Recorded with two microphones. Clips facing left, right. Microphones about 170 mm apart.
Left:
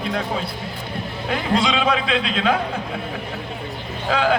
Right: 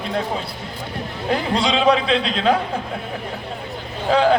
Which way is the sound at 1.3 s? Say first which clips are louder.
Right 1 dB; 35° right (ahead or behind).